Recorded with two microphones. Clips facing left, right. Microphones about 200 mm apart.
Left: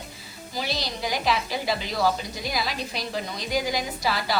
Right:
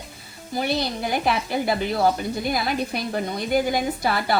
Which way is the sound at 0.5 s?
55° right (ahead or behind).